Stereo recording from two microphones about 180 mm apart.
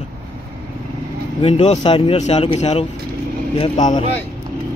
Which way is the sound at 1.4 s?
35° left (ahead or behind).